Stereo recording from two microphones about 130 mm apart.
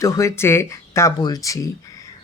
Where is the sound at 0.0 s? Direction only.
25° left (ahead or behind).